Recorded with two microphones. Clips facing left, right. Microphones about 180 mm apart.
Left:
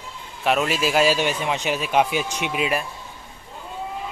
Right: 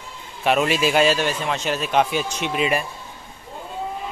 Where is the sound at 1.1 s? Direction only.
15° left (ahead or behind).